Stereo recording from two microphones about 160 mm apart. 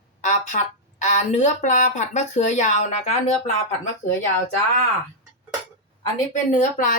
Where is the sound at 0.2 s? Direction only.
50° left (ahead or behind).